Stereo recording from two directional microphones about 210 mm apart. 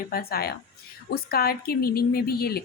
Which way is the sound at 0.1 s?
45° left (ahead or behind).